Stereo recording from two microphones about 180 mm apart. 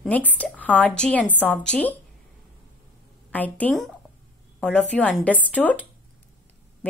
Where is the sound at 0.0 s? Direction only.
10° left (ahead or behind).